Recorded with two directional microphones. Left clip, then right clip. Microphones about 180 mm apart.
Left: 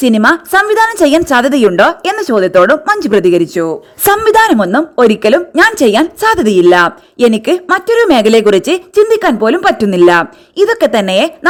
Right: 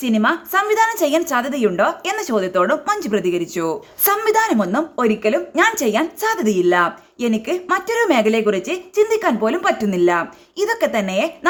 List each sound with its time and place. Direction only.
0.0 s speech: 45° left (ahead or behind)
5.1 s speech: 45° left (ahead or behind)